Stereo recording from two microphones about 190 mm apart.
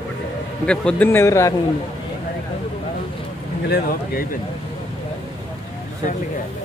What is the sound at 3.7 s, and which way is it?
Speech, 50° left (ahead or behind).